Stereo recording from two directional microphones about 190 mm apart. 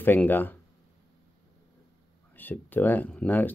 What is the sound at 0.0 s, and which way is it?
Speech, 10° left (ahead or behind).